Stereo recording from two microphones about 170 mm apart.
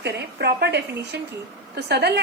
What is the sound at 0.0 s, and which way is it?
A woman's voice, 75° right (ahead or behind).